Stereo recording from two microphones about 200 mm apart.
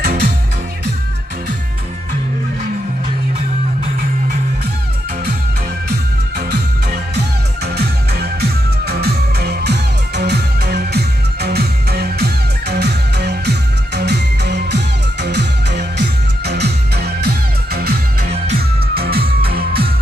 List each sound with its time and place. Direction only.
0.0 s music: 50° right (ahead or behind)
7.2 s music: 55° right (ahead or behind)
18.9 s music: 50° right (ahead or behind)